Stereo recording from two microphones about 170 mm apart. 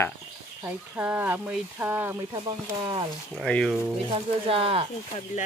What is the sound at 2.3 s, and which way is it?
Speech, 25° right (ahead or behind).